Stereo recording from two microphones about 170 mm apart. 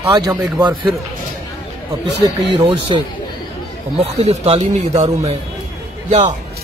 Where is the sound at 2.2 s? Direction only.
30° right (ahead or behind).